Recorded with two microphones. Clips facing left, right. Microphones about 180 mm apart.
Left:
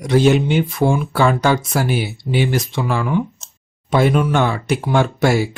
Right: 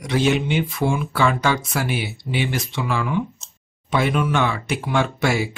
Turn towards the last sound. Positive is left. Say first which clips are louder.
# left 5 dB
turn(degrees=40)  # may be behind; listen again after turning